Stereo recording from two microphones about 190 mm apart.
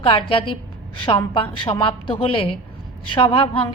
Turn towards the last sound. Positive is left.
turn(degrees=30)  # may be behind; listen again after turning